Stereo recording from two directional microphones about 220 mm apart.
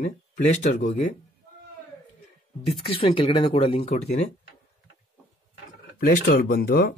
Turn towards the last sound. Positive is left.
turn(degrees=45)  # may be behind; listen again after turning